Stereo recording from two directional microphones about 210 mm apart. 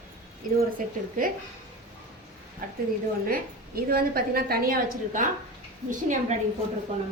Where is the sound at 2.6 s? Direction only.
40° right (ahead or behind).